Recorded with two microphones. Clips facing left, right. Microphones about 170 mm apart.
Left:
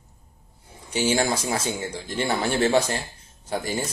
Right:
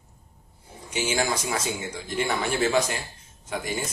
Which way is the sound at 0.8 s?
35° left (ahead or behind).